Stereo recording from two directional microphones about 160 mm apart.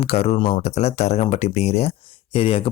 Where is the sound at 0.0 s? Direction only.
40° left (ahead or behind).